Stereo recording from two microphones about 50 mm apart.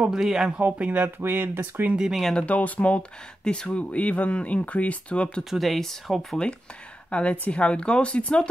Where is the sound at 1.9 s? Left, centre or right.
Centre.